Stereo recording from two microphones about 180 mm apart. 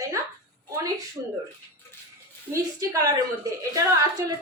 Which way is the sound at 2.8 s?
20° right (ahead or behind).